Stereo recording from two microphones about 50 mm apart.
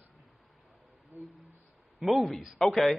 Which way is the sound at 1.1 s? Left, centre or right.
Right.